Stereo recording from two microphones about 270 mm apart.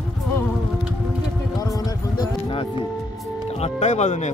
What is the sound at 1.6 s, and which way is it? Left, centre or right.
Music, centre.